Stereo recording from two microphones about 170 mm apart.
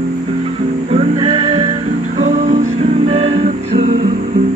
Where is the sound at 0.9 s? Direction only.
35° right (ahead or behind).